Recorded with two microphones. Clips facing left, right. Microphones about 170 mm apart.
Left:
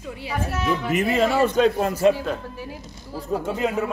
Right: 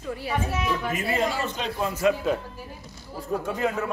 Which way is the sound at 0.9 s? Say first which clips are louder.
Left 6 dB; 60° left (ahead or behind).